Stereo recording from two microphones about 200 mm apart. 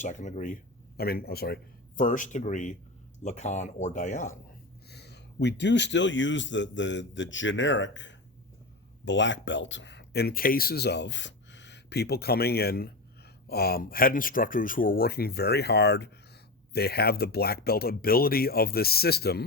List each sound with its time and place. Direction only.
0.0 s speech: 35° left (ahead or behind)
2.0 s speech: 40° left (ahead or behind)
4.9 s a man's voice: 55° left (ahead or behind)